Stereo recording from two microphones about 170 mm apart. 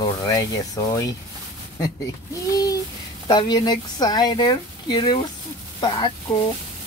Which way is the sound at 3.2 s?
25° left (ahead or behind).